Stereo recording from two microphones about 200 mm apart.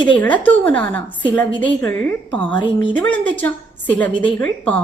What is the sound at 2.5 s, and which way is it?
Speech, 25° left (ahead or behind).